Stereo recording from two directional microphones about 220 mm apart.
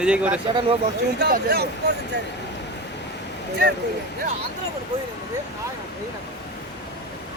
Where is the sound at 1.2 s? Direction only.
45° right (ahead or behind).